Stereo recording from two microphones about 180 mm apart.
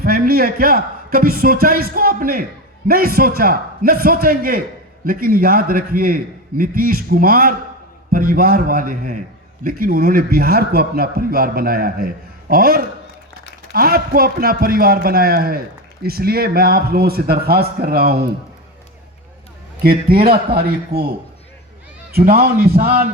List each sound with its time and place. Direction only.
0.0 s a man's voice: 55° right (ahead or behind)
19.8 s a man's voice: 60° right (ahead or behind)
22.1 s a man's voice: 60° right (ahead or behind)